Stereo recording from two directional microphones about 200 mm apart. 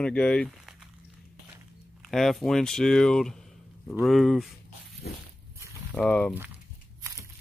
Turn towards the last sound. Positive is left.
turn(degrees=5)  # may be behind; listen again after turning